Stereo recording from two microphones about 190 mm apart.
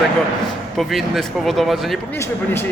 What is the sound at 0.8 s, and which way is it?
A man's voice, centre (ahead or behind).